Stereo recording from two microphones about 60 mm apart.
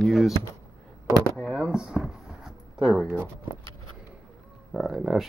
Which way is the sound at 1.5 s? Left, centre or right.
Centre.